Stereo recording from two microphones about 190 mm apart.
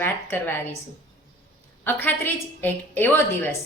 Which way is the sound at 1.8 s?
10° left (ahead or behind).